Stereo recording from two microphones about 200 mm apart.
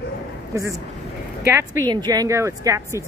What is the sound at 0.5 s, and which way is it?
Speech, 15° right (ahead or behind).